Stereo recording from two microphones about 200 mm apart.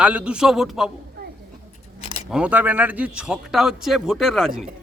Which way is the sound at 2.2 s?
5° right (ahead or behind).